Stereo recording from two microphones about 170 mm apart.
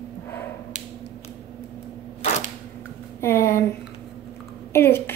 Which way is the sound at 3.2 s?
15° left (ahead or behind).